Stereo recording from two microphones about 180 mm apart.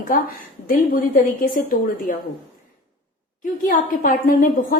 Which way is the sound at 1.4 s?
50° left (ahead or behind).